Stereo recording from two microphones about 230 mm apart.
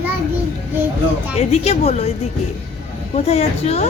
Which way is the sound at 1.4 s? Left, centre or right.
Left.